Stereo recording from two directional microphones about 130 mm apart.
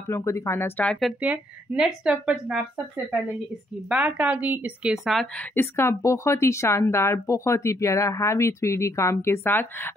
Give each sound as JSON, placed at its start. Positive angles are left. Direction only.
{"t": 0.1, "sound": "speech", "side_deg": 20}
{"t": 1.2, "sound": "speech", "side_deg": -10}
{"t": 3.9, "sound": "speech", "side_deg": -10}
{"t": 5.5, "sound": "speech", "side_deg": 20}